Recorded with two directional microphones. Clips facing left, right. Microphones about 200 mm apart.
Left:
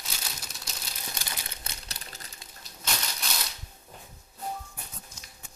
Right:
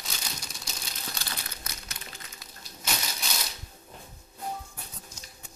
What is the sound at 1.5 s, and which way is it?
Crumpling, 30° left (ahead or behind).